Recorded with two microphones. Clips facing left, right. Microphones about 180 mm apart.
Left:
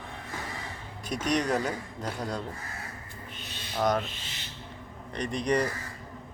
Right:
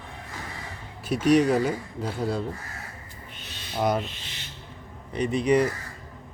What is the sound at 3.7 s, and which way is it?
Speech, 10° right (ahead or behind).